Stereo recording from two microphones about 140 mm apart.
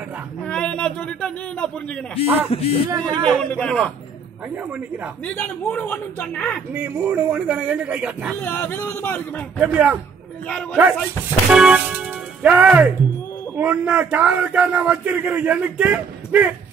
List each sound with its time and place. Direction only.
0.4 s a man's voice: 10° left (ahead or behind)
2.2 s speech: 45° left (ahead or behind)
3.0 s speech: 5° left (ahead or behind)
4.6 s a man's voice: 10° right (ahead or behind)
5.2 s speech: 10° left (ahead or behind)
6.7 s a man's voice: 10° right (ahead or behind)
8.4 s speech: 15° left (ahead or behind)
9.6 s a man's voice: 10° right (ahead or behind)
10.4 s speech: 10° left (ahead or behind)
11.5 s a man's voice: 5° right (ahead or behind)